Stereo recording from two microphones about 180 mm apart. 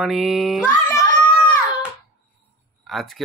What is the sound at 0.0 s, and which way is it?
Speech, centre (ahead or behind).